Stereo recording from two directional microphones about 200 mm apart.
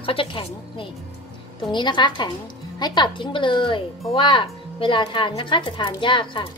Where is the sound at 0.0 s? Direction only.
25° left (ahead or behind).